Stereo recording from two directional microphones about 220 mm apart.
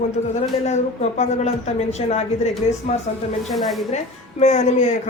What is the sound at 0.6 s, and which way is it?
A man's voice, 30° left (ahead or behind).